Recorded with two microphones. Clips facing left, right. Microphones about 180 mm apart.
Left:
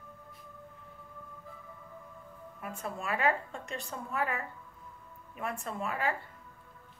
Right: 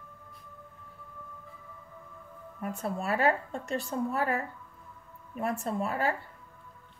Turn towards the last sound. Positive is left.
turn(degrees=-35)  # may be behind; listen again after turning